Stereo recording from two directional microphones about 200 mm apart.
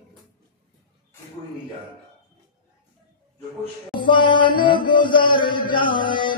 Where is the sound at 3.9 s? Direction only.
25° left (ahead or behind).